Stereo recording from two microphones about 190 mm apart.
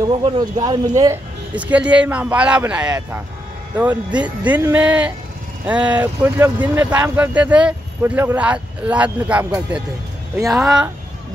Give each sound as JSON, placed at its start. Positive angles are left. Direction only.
{"t": 0.0, "sound": "speech", "side_deg": -25}
{"t": 1.5, "sound": "speech", "side_deg": -5}
{"t": 10.6, "sound": "speech", "side_deg": -5}